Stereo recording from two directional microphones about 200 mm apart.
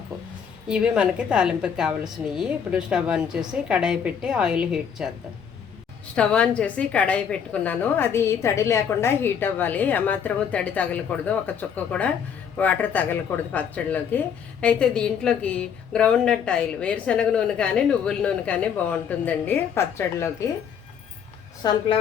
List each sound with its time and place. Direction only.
0.7 s a woman's voice: 5° right (ahead or behind)
6.1 s a woman's voice: 5° left (ahead or behind)
21.6 s speech: 20° left (ahead or behind)